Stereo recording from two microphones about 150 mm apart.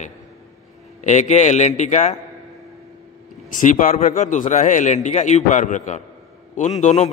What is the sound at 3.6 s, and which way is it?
A man's voice, 60° left (ahead or behind).